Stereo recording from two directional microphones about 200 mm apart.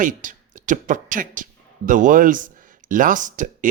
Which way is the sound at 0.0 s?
40° right (ahead or behind).